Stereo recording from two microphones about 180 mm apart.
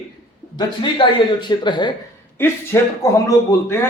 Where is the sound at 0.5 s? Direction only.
25° left (ahead or behind).